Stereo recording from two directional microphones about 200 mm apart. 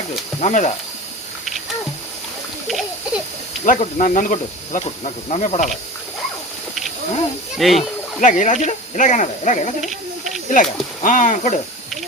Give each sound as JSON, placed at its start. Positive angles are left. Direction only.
{"t": 0.3, "sound": "speech", "side_deg": 35}
{"t": 3.6, "sound": "speech", "side_deg": 35}
{"t": 7.5, "sound": "speech", "side_deg": 0}
{"t": 8.2, "sound": "speech", "side_deg": 40}
{"t": 9.8, "sound": "hiss", "side_deg": 0}
{"t": 10.5, "sound": "speech", "side_deg": 40}